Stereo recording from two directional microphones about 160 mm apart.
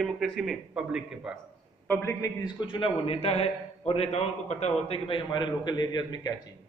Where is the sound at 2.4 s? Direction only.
30° left (ahead or behind).